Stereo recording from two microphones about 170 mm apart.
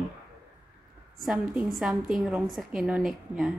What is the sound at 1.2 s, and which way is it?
A woman's voice, centre (ahead or behind).